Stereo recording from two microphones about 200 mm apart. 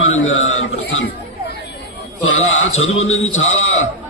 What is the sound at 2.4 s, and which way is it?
Speech, 85° left.